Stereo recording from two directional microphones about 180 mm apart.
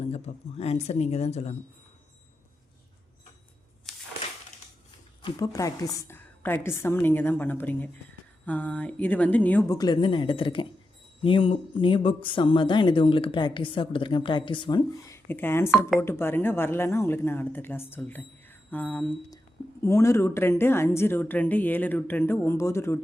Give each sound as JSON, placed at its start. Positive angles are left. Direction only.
{"t": 0.0, "sound": "speech", "side_deg": 35}
{"t": 5.2, "sound": "a woman's voice", "side_deg": 20}
{"t": 9.7, "sound": "a woman's voice", "side_deg": 25}